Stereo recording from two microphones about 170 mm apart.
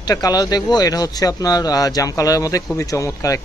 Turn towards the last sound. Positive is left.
turn(degrees=20)  # may be behind; listen again after turning